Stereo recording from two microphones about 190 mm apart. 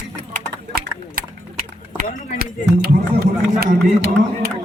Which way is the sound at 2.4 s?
55° right (ahead or behind).